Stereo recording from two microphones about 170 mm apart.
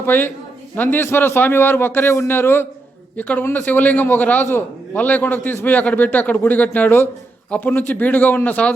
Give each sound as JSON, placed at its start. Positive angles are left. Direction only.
{"t": 0.0, "sound": "a man's voice", "side_deg": 10}